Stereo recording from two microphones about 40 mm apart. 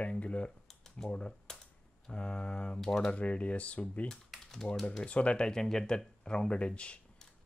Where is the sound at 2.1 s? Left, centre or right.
Left.